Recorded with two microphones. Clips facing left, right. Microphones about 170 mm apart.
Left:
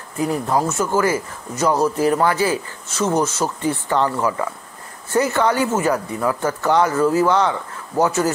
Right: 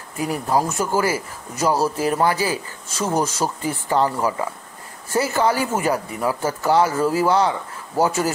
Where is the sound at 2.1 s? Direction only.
30° right (ahead or behind).